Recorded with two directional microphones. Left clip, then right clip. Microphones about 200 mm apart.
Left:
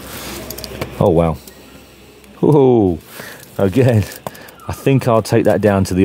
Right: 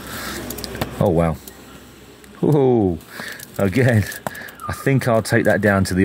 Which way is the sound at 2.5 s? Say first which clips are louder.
Left 5 dB; 30° left (ahead or behind).